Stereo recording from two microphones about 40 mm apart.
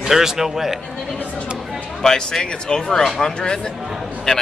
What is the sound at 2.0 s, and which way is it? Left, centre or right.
Speech, centre.